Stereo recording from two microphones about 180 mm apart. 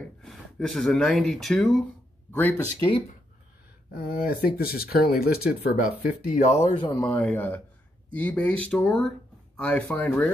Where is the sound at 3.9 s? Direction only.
55° left (ahead or behind).